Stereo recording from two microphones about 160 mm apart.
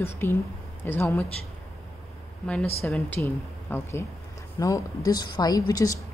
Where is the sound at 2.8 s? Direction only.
5° left (ahead or behind).